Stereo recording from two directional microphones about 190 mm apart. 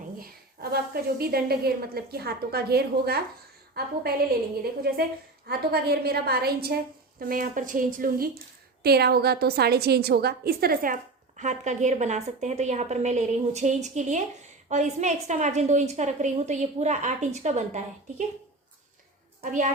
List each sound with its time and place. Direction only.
0.2 s a woman's voice: 55° right (ahead or behind)
4.6 s a woman's voice: 55° right (ahead or behind)
11.3 s a woman's voice: 40° right (ahead or behind)
19.4 s a child's voice: 45° right (ahead or behind)